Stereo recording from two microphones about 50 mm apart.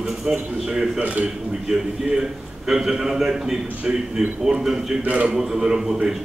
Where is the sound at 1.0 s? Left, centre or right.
Right.